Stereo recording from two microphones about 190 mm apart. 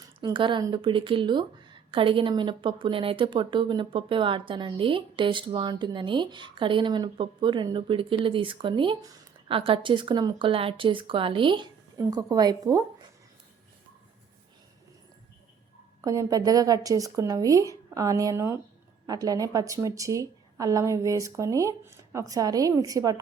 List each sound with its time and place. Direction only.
0.2 s a woman's voice: 25° right (ahead or behind)
16.0 s a woman's voice: 15° right (ahead or behind)